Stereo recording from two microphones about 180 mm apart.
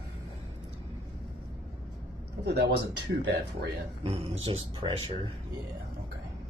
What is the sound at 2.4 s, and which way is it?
Speech, 65° right (ahead or behind).